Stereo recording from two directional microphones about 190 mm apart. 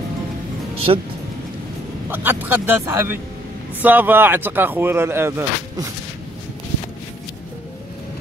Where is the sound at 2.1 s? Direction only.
10° right (ahead or behind).